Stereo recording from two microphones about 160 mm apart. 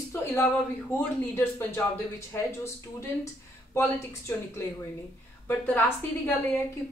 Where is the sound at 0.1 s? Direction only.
15° left (ahead or behind).